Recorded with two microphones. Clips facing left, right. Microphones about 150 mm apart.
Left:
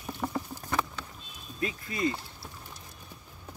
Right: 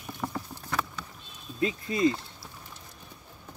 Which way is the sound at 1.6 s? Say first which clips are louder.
Right 6 dB; 25° right (ahead or behind).